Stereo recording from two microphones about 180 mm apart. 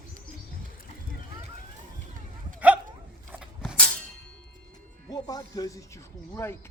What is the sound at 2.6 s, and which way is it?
Hiccup, 10° right (ahead or behind).